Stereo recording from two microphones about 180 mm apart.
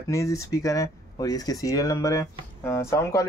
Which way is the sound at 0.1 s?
15° left (ahead or behind).